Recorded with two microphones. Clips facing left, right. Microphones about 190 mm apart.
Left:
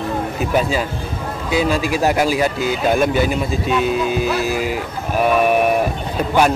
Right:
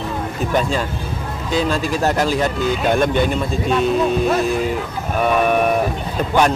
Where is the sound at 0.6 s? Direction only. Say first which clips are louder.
Left 1 dB; 5° left (ahead or behind).